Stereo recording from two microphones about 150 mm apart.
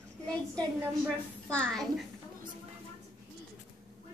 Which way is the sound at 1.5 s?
5° left (ahead or behind).